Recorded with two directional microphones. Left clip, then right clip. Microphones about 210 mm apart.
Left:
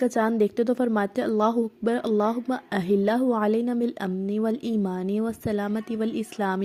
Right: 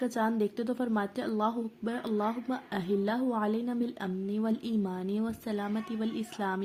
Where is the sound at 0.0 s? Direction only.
30° left (ahead or behind).